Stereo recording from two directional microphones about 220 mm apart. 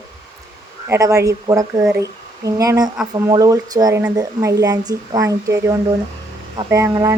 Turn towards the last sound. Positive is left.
turn(degrees=-15)  # may be behind; listen again after turning